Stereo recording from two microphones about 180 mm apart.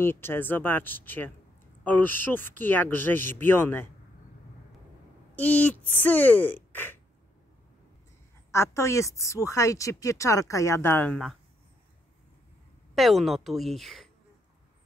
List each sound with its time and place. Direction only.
0.0 s a woman's voice: 10° left (ahead or behind)
5.3 s a woman's voice: 10° left (ahead or behind)
8.5 s a woman's voice: 15° left (ahead or behind)
12.9 s a woman's voice: centre (ahead or behind)